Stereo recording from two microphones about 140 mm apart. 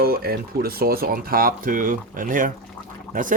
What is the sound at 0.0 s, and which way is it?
Speech, 90° right.